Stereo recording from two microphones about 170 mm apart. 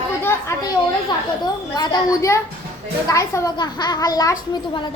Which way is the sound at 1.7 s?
20° left (ahead or behind).